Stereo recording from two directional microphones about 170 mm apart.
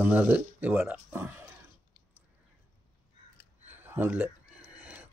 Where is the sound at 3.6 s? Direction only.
10° right (ahead or behind).